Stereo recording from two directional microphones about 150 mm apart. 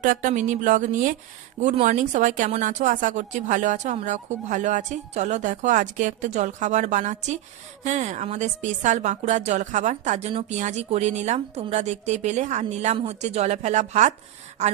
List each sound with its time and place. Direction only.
0.0 s a woman's voice: 60° right (ahead or behind)